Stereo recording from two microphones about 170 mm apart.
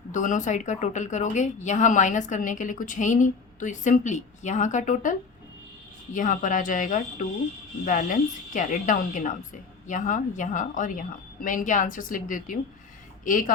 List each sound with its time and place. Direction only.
0.1 s a woman's voice: 50° left (ahead or behind)
6.1 s a woman's voice: 50° left (ahead or behind)